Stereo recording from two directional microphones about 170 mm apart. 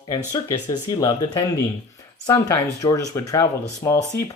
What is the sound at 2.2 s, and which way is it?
Speech, 20° left (ahead or behind).